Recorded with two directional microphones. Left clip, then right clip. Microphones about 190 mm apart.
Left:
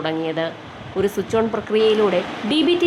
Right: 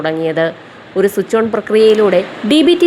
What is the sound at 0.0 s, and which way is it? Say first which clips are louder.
Speech: right 8 dB; 20° right (ahead or behind).